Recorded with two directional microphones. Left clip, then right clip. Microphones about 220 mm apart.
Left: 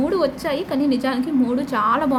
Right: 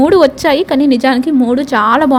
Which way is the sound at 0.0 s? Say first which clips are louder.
Right 12 dB; 40° right (ahead or behind).